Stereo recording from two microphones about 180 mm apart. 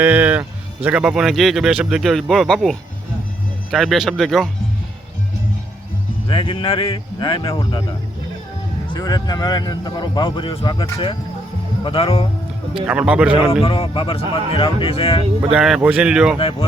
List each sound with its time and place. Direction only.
0.0 s speech: 10° right (ahead or behind)
6.2 s a man's voice: 30° left (ahead or behind)
12.9 s a man's voice: 5° right (ahead or behind)
13.6 s a man's voice: 30° left (ahead or behind)
15.5 s speech: 5° right (ahead or behind)
16.4 s speech: 30° left (ahead or behind)